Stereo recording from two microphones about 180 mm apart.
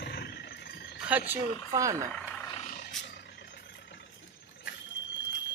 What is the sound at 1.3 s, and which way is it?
Speech, 10° right (ahead or behind).